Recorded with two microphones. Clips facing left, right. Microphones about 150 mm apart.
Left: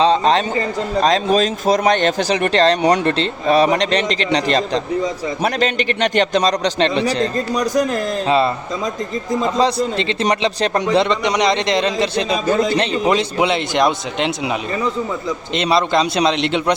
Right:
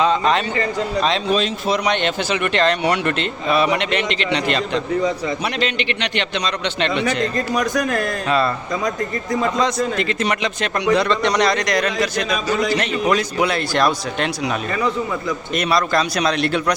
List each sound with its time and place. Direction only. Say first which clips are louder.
0.0 s a man's voice: left 3 dB; 35° left (ahead or behind)
10.8 s a man's voice: right 2 dB; 20° left (ahead or behind)
15.5 s a man's voice: left 3 dB; 25° left (ahead or behind)